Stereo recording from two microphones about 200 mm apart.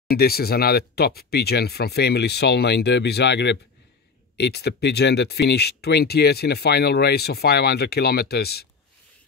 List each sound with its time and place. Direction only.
0.1 s speech: 50° left (ahead or behind)